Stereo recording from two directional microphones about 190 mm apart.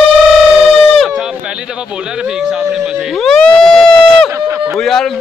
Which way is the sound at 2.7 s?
Centre (ahead or behind).